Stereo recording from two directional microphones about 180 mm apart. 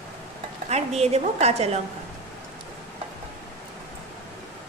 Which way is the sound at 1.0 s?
35° right (ahead or behind).